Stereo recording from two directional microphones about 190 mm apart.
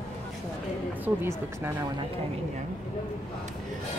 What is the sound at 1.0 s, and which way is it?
Speech, 10° right (ahead or behind).